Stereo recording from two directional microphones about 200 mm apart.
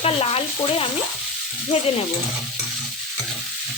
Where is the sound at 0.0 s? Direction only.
30° left (ahead or behind).